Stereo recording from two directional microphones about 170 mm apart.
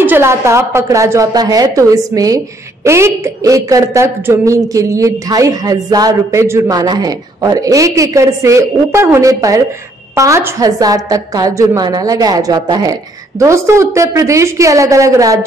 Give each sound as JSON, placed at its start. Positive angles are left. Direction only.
{"t": 0.0, "sound": "a woman's voice", "side_deg": -15}